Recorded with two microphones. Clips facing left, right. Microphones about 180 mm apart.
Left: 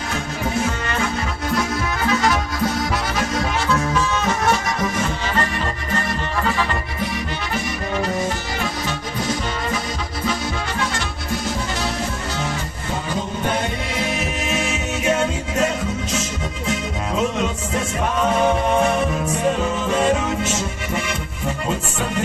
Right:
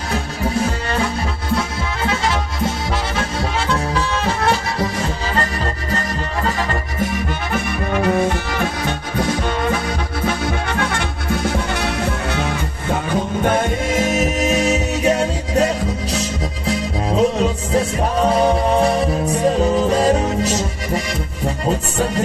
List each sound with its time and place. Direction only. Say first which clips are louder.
2.0 s music: left 1 dB; 25° right (ahead or behind)